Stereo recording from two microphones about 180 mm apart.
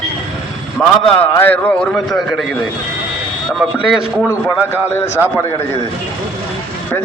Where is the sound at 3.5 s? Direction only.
Centre (ahead or behind).